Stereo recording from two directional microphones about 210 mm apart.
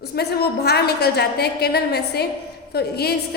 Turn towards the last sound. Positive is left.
turn(degrees=50)  # may be behind; listen again after turning